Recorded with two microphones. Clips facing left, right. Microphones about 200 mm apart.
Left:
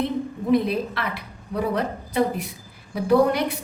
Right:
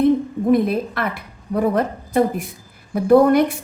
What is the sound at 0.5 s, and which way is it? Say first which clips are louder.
A woman's voice: right 2 dB; 50° right (ahead or behind).